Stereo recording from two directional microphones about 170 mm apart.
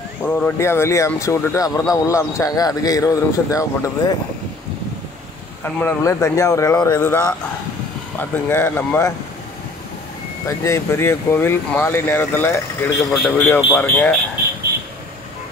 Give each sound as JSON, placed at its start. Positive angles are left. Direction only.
{"t": 0.2, "sound": "speech", "side_deg": 15}
{"t": 5.6, "sound": "speech", "side_deg": 15}
{"t": 10.6, "sound": "speech", "side_deg": 15}
{"t": 13.1, "sound": "speech", "side_deg": 0}